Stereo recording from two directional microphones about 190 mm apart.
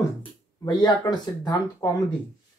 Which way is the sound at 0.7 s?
20° left (ahead or behind).